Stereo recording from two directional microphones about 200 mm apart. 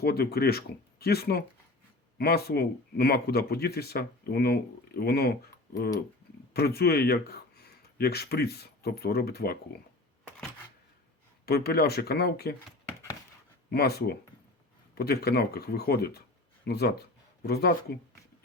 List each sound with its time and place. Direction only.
0.0 s speech: 50° left (ahead or behind)
6.5 s speech: 50° left (ahead or behind)
11.4 s speech: 50° left (ahead or behind)
13.7 s speech: 55° left (ahead or behind)